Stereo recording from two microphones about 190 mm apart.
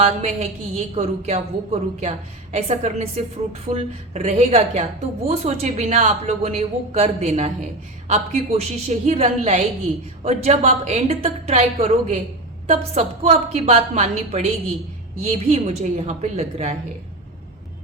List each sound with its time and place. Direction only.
0.0 s a woman's voice: 35° right (ahead or behind)